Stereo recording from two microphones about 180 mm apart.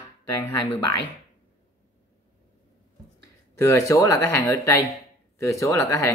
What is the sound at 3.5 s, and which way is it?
Speech, 15° left (ahead or behind).